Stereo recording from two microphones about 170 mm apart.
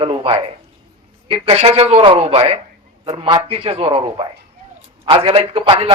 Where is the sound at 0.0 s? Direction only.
30° right (ahead or behind).